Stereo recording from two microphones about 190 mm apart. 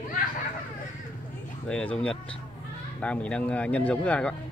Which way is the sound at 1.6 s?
5° left (ahead or behind).